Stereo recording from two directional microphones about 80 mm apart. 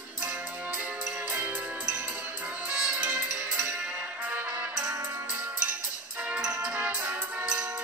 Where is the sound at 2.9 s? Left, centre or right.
Right.